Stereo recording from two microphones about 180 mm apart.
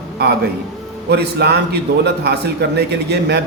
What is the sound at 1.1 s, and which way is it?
A man's voice, 65° right (ahead or behind).